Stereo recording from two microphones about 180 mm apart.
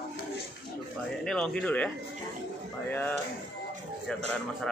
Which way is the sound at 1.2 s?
5° left (ahead or behind).